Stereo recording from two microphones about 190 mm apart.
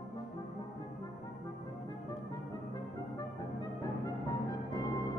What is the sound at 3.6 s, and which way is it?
Music, 20° left (ahead or behind).